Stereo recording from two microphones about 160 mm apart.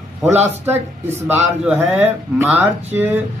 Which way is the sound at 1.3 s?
10° right (ahead or behind).